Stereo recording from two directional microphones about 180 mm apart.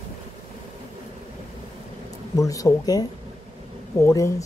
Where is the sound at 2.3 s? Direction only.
20° left (ahead or behind).